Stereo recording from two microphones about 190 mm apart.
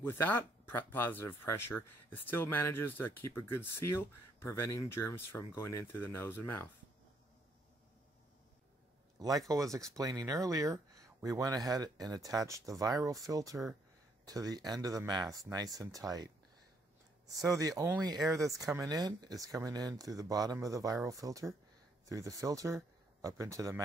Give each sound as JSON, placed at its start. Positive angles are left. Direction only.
{"t": 0.0, "sound": "speech", "side_deg": 10}
{"t": 9.2, "sound": "speech", "side_deg": -20}
{"t": 17.3, "sound": "speech", "side_deg": -20}